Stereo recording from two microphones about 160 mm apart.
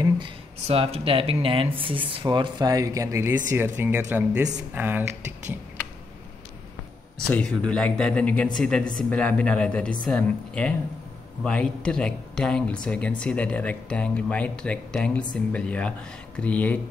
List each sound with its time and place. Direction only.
0.7 s speech: 40° right (ahead or behind); by 5.0 s 10° right (ahead or behind)
7.2 s speech: 5° left (ahead or behind)